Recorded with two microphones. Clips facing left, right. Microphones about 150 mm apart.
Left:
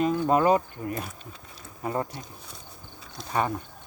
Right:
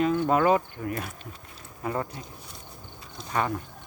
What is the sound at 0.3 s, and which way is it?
Speech, 35° left (ahead or behind).